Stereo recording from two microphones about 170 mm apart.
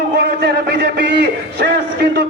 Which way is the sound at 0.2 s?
75° right (ahead or behind).